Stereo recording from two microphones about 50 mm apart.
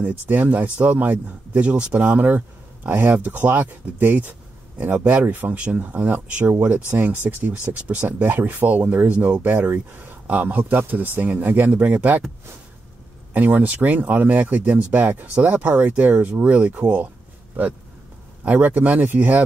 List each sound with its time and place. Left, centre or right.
0.0 s speech: right
13.3 s speech: right
18.4 s speech: right